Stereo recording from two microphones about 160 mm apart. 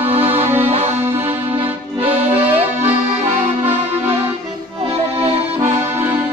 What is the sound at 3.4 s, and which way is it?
Music, 45° right (ahead or behind).